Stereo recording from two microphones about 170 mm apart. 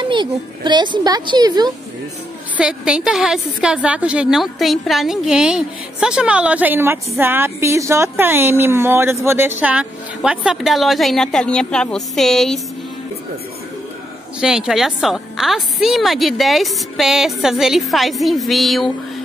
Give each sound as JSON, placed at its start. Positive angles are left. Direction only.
{"t": 0.0, "sound": "a child's voice", "side_deg": -30}
{"t": 2.5, "sound": "a woman's voice", "side_deg": -5}
{"t": 14.4, "sound": "a woman's voice", "side_deg": -5}